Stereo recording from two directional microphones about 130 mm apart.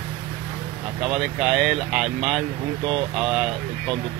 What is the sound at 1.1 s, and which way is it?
Speech, 5° right (ahead or behind).